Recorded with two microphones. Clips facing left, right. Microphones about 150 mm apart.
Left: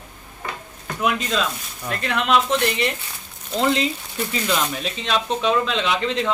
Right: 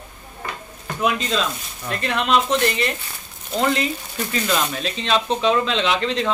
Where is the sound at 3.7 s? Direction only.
20° left (ahead or behind).